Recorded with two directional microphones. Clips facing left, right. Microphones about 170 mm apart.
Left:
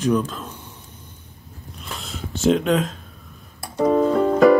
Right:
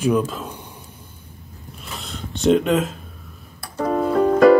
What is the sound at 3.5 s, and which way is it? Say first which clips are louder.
Music: left 4 dB; 15° left (ahead or behind).